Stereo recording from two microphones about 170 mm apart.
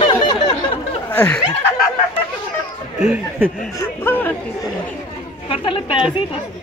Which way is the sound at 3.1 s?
10° right (ahead or behind).